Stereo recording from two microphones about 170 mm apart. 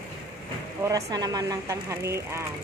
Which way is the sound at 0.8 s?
20° right (ahead or behind).